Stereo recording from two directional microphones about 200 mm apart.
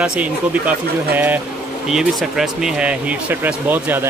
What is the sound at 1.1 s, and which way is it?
Speech, 10° right (ahead or behind).